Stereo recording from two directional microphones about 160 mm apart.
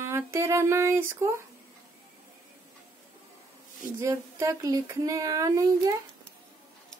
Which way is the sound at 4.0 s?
20° right (ahead or behind).